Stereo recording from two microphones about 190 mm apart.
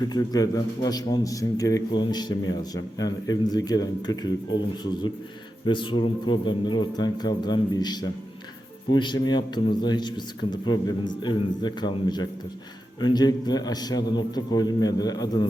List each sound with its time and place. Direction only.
0.1 s a man's voice: 20° left (ahead or behind)
5.6 s a man's voice: 25° left (ahead or behind)